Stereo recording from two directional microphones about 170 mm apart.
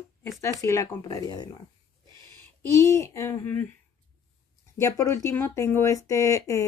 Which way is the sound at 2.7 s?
15° left (ahead or behind).